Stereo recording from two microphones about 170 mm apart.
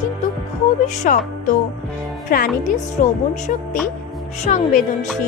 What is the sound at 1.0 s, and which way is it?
Speech, 50° left (ahead or behind).